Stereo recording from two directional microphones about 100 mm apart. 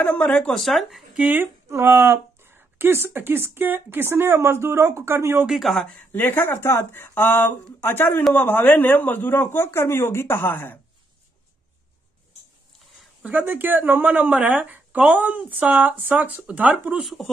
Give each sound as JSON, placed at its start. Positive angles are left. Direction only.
{"t": 0.0, "sound": "speech", "side_deg": 15}
{"t": 1.2, "sound": "a woman's voice", "side_deg": -20}
{"t": 5.5, "sound": "speech", "side_deg": 0}
{"t": 6.1, "sound": "speech", "side_deg": 20}
{"t": 13.2, "sound": "speech", "side_deg": -15}
{"t": 17.0, "sound": "speech", "side_deg": 0}